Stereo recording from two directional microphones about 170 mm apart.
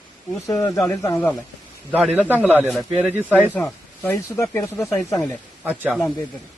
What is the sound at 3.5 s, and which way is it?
A man's voice, 10° left (ahead or behind).